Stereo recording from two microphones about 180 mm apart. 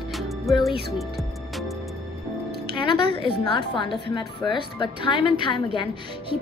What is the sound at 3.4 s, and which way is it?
A woman's voice, 25° left (ahead or behind).